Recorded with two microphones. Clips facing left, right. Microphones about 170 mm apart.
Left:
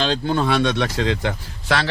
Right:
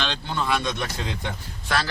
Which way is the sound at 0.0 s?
45° left (ahead or behind).